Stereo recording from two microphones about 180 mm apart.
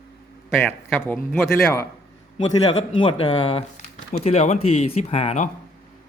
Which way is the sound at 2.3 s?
35° left (ahead or behind).